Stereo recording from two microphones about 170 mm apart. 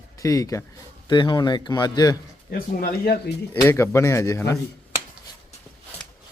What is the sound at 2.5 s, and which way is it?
Speech, 55° left (ahead or behind).